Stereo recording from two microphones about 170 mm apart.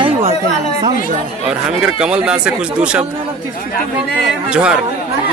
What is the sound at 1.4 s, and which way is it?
Speech, 5° right (ahead or behind).